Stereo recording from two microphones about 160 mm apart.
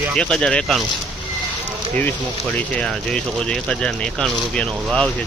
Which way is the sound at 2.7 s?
5° left (ahead or behind).